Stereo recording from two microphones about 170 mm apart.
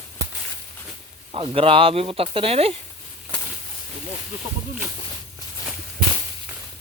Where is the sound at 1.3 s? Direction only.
35° right (ahead or behind).